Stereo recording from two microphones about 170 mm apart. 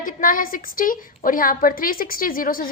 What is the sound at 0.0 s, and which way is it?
A woman's voice, 55° left (ahead or behind).